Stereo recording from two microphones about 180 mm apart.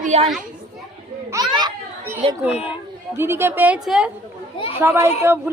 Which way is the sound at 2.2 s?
35° right (ahead or behind).